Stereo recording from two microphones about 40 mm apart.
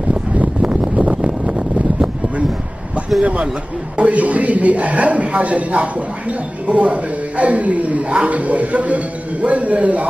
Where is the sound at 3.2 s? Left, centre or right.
Right.